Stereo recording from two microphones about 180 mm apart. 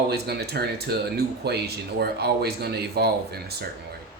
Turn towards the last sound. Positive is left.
turn(degrees=-60)  # may be behind; listen again after turning